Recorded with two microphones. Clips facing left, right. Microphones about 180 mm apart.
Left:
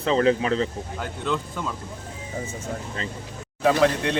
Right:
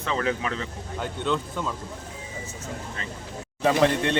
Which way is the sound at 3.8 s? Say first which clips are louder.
Left 1 dB; centre (ahead or behind).